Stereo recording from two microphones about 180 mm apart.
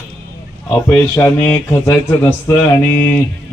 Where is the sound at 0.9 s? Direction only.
15° left (ahead or behind).